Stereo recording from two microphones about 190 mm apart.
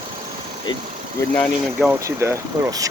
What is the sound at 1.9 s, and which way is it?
Speech, 15° right (ahead or behind).